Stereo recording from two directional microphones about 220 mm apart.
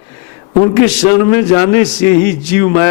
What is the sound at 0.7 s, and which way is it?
A man's voice, 10° left (ahead or behind).